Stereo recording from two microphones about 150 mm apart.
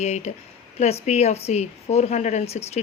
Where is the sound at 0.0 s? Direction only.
45° left (ahead or behind).